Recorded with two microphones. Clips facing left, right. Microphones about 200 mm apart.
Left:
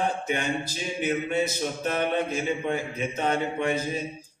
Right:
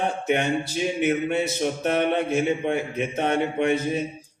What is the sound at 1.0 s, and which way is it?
Speech, 65° right (ahead or behind).